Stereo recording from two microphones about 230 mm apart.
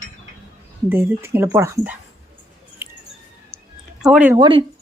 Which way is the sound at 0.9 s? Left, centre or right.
Centre.